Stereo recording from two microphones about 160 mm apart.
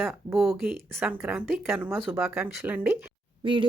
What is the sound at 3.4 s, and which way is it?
Speech, 30° right (ahead or behind).